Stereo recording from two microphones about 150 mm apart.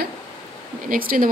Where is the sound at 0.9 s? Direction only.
70° right (ahead or behind).